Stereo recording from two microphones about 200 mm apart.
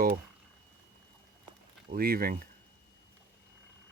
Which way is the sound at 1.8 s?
50° right (ahead or behind).